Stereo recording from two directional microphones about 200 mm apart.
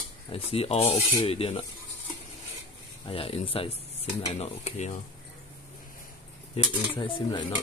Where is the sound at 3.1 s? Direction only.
30° left (ahead or behind).